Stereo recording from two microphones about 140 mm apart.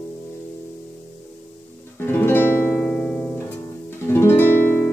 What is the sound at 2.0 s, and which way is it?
Music, 15° left (ahead or behind).